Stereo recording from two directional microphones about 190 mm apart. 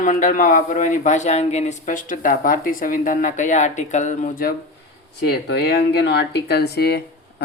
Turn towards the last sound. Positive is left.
turn(degrees=55)  # may be behind; listen again after turning